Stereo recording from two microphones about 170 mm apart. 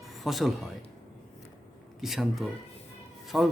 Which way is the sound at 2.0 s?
Centre (ahead or behind).